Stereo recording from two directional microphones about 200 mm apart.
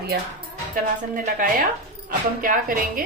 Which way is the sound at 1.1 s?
40° right (ahead or behind).